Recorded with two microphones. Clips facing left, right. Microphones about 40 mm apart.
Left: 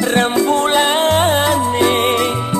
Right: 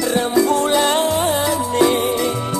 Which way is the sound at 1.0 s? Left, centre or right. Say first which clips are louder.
Left 4 dB; left.